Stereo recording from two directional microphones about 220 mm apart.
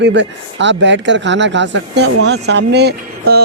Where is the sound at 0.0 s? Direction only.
55° right (ahead or behind).